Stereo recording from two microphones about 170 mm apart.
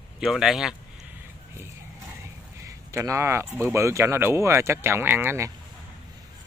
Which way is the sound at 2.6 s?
20° right (ahead or behind).